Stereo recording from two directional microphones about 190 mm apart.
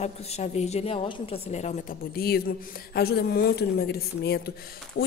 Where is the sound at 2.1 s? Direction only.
55° left (ahead or behind).